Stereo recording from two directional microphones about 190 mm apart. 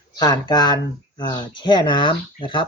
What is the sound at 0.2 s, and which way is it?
Speech, 20° left (ahead or behind).